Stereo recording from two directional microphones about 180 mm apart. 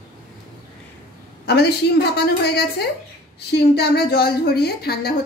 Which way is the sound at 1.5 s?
65° left (ahead or behind).